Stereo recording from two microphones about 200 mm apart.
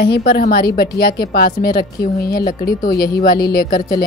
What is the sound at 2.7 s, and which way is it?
Speech, 50° left (ahead or behind).